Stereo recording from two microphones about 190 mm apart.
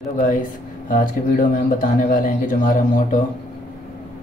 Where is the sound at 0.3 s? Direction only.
45° left (ahead or behind).